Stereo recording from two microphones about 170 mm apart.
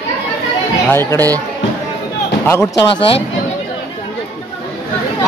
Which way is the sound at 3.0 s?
35° left (ahead or behind).